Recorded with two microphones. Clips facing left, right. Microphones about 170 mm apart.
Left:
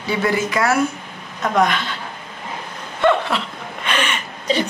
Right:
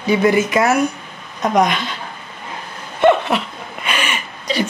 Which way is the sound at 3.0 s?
20° right (ahead or behind).